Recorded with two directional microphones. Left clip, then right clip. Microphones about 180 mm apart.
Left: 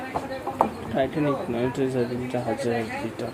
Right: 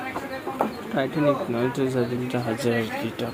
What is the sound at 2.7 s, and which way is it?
Speech, 30° right (ahead or behind).